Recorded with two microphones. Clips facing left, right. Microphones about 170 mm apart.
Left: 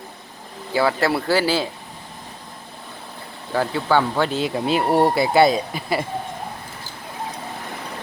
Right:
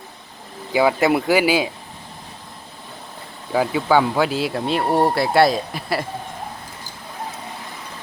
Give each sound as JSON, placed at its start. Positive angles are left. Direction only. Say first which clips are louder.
{"t": 0.7, "sound": "speech", "louder": "right 3 dB", "side_deg": -15}
{"t": 3.5, "sound": "speech", "louder": "right 2 dB", "side_deg": -10}